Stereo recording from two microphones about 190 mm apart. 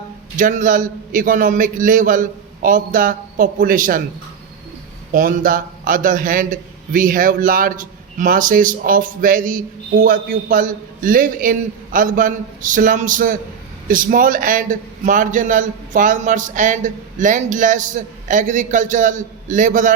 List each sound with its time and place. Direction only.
0.3 s a man's voice: 45° right (ahead or behind)
5.1 s a man's voice: 45° right (ahead or behind)